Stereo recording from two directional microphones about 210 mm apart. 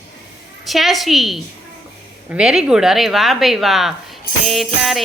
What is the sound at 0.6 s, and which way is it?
Speech, centre (ahead or behind).